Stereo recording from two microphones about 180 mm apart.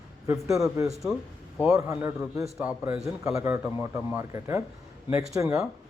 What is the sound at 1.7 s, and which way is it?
A man's voice, 15° right (ahead or behind).